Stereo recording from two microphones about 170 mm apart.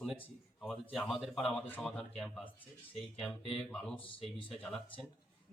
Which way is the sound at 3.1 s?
Centre (ahead or behind).